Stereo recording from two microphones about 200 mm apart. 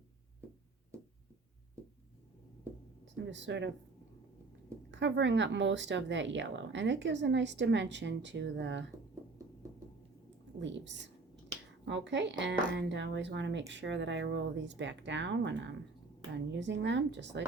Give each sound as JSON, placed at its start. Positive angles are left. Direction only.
{"t": 3.2, "sound": "speech", "side_deg": -65}
{"t": 4.9, "sound": "speech", "side_deg": -65}
{"t": 10.6, "sound": "speech", "side_deg": -65}